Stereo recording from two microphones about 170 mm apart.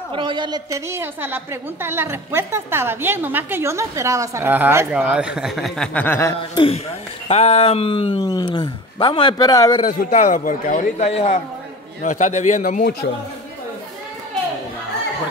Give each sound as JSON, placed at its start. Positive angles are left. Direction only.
{"t": 0.1, "sound": "a woman's voice", "side_deg": -30}
{"t": 6.5, "sound": "speech", "side_deg": 30}
{"t": 9.8, "sound": "a man's voice", "side_deg": 45}